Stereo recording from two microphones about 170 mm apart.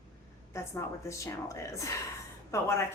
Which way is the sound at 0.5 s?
15° left (ahead or behind).